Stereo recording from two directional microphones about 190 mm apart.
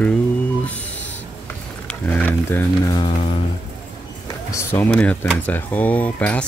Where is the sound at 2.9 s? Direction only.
35° left (ahead or behind).